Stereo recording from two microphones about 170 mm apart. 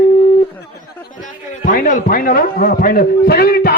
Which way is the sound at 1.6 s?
50° left (ahead or behind).